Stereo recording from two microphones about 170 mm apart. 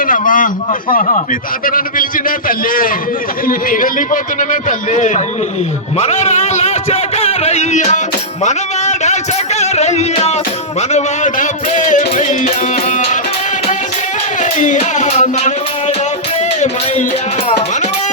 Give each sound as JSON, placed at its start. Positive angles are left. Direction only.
{"t": 0.0, "sound": "a man's voice", "side_deg": 55}
{"t": 8.4, "sound": "a sound", "side_deg": 45}
{"t": 10.8, "sound": "a man's voice", "side_deg": 45}
{"t": 14.4, "sound": "music", "side_deg": 45}